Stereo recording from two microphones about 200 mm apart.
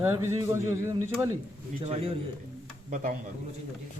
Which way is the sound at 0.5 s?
15° right (ahead or behind).